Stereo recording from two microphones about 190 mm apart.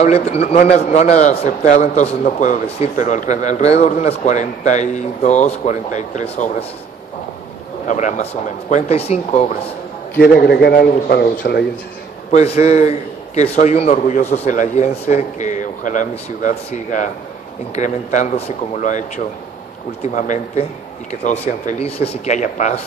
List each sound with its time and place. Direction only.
0.0 s speech: 35° left (ahead or behind)
7.8 s speech: 40° left (ahead or behind)
10.1 s a man's voice: 55° left (ahead or behind)
12.3 s speech: 35° left (ahead or behind)